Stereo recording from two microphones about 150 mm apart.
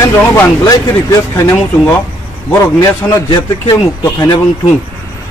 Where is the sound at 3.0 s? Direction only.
20° left (ahead or behind).